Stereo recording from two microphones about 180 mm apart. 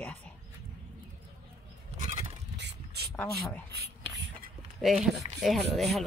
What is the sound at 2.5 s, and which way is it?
Vehicle, 70° right (ahead or behind).